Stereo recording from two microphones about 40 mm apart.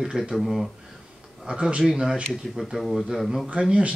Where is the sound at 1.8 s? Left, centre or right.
Centre.